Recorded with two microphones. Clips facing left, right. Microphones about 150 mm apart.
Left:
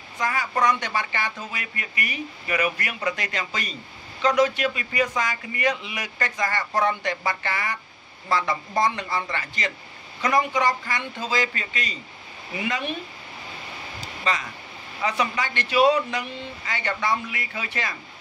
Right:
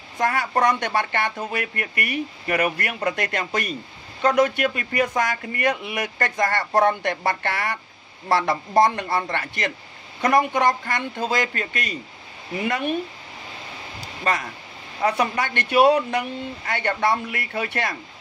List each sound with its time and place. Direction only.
0.2 s a man's voice: 60° right (ahead or behind)
14.2 s a man's voice: 55° right (ahead or behind)